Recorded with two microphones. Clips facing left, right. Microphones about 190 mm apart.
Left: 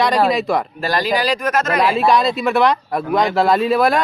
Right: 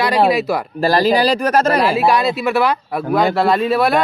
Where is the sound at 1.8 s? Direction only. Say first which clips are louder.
Even; 5° right (ahead or behind).